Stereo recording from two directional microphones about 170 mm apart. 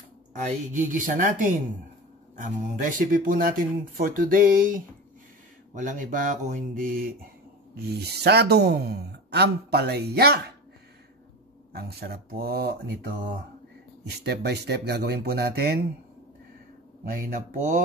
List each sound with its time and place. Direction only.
0.4 s speech: 45° right (ahead or behind)
7.7 s speech: 75° right (ahead or behind)
11.7 s speech: 65° right (ahead or behind)
17.0 s speech: 55° right (ahead or behind)